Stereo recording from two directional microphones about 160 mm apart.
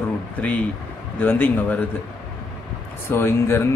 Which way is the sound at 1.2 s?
10° left (ahead or behind).